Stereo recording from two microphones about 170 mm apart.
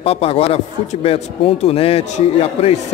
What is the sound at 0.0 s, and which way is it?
A man's voice, 35° left (ahead or behind).